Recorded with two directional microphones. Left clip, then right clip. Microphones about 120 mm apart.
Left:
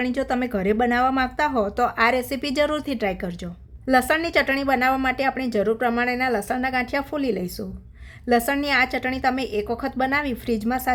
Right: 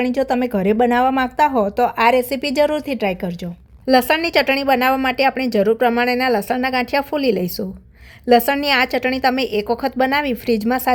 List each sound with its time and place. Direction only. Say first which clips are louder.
0.0 s a woman's voice: right 6 dB; 25° right (ahead or behind)